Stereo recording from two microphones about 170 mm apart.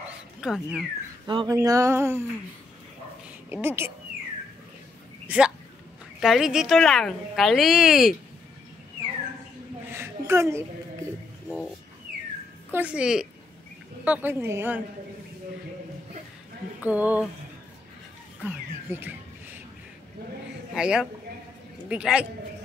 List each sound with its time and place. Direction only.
0.4 s speech: 5° right (ahead or behind)
1.2 s speech: 25° right (ahead or behind)
3.4 s speech: 10° right (ahead or behind)
5.2 s speech: 5° right (ahead or behind)
9.9 s a sound: 15° right (ahead or behind)
12.7 s a woman's voice: 5° right (ahead or behind)
16.8 s a woman's voice: 10° right (ahead or behind)
18.4 s a woman's voice: 10° right (ahead or behind)
20.7 s a woman's voice: 5° right (ahead or behind)